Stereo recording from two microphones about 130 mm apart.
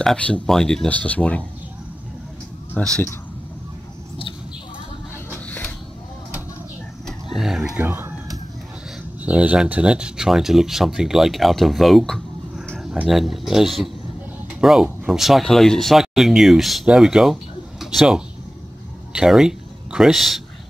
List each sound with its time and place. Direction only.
0.0 s speech: 5° left (ahead or behind)
2.8 s speech: 10° left (ahead or behind)
7.1 s a sound: centre (ahead or behind)
7.8 s speech: 15° right (ahead or behind)
9.2 s speech: 10° right (ahead or behind)